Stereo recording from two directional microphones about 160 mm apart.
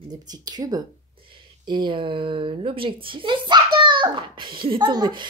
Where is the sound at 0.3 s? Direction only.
25° right (ahead or behind).